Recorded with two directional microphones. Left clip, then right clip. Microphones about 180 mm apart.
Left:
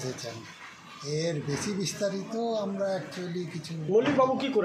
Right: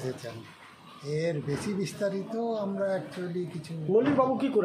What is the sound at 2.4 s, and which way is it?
Speech, 10° right (ahead or behind).